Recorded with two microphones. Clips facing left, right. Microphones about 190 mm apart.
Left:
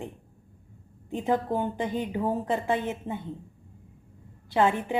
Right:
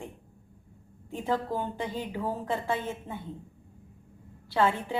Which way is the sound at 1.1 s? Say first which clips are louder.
Left 4 dB; 20° left (ahead or behind).